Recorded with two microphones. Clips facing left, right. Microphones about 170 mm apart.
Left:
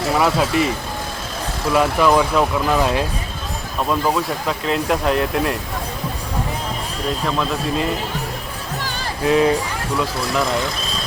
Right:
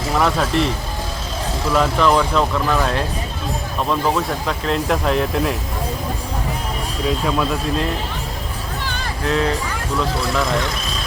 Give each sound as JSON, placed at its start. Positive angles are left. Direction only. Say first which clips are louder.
{"t": 0.2, "sound": "speech", "louder": "right 1 dB", "side_deg": 5}
{"t": 1.7, "sound": "speech", "louder": "left 1 dB", "side_deg": 10}
{"t": 3.8, "sound": "speech", "louder": "even", "side_deg": 0}
{"t": 7.3, "sound": "speech", "louder": "right 1 dB", "side_deg": -5}
{"t": 9.2, "sound": "speech", "louder": "left 4 dB", "side_deg": 15}